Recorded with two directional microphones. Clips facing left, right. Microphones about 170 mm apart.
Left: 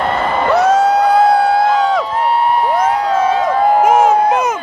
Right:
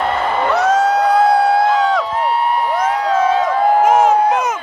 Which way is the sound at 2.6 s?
35° left (ahead or behind).